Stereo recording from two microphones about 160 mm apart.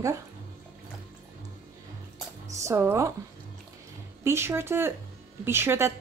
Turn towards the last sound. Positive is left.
turn(degrees=-15)  # may be behind; listen again after turning